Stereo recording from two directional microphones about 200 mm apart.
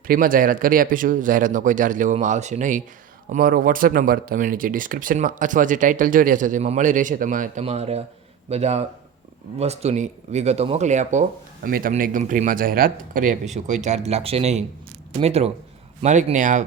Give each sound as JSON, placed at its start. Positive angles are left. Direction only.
{"t": 0.1, "sound": "speech", "side_deg": -45}